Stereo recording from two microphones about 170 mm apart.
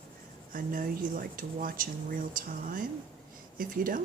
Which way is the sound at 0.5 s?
55° right (ahead or behind).